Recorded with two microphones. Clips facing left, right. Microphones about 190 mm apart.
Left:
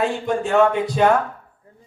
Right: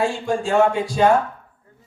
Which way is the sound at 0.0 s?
20° left (ahead or behind).